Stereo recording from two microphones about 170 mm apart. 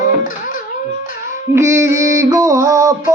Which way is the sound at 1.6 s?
15° right (ahead or behind).